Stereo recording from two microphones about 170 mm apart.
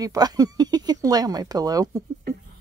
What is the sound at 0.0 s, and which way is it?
Speech, 20° right (ahead or behind).